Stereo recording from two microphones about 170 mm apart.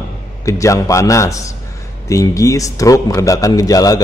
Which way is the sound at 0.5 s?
20° left (ahead or behind).